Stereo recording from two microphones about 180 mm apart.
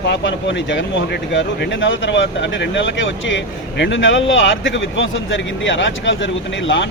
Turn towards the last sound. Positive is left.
turn(degrees=90)